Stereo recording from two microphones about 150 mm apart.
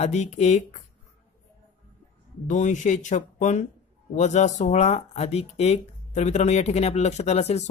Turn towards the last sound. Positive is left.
turn(degrees=45)  # may be behind; listen again after turning